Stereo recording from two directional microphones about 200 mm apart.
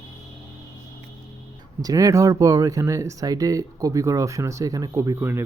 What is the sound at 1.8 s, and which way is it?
Speech, 15° right (ahead or behind).